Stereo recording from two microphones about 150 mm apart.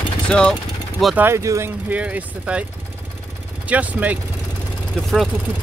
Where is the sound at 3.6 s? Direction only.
10° right (ahead or behind).